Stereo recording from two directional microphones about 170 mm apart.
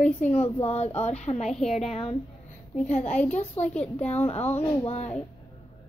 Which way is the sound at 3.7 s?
5° left (ahead or behind).